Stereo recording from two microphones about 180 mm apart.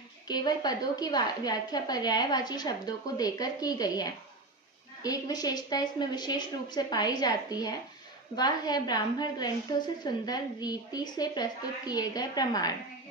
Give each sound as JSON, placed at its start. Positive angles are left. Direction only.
{"t": 0.3, "sound": "a woman's voice", "side_deg": 25}